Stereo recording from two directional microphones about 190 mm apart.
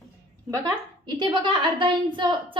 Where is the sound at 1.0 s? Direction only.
25° right (ahead or behind).